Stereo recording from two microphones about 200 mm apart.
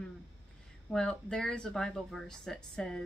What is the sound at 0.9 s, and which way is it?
Speech, 5° left (ahead or behind).